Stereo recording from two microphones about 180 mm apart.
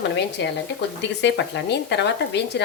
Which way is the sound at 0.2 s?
70° left (ahead or behind).